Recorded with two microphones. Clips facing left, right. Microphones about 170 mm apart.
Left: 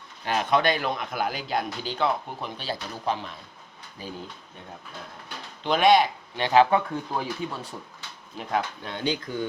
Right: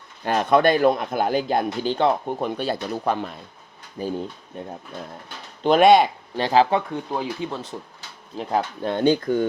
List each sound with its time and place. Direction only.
0.3 s speech: 50° right (ahead or behind)
5.6 s speech: 45° right (ahead or behind)
6.0 s speech: 35° right (ahead or behind); by 7.6 s 20° right (ahead or behind)
8.4 s speech: 35° right (ahead or behind)
8.8 s speech: 50° right (ahead or behind)